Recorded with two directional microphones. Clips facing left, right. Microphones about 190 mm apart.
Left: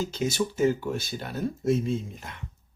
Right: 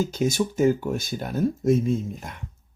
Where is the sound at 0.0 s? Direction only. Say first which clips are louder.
Right 4 dB; 50° right (ahead or behind).